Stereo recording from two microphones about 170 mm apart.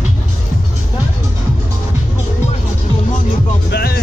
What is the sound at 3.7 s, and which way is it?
Music, 65° left (ahead or behind).